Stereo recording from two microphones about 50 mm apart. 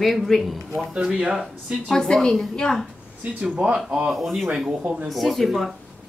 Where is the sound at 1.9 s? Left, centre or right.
Centre.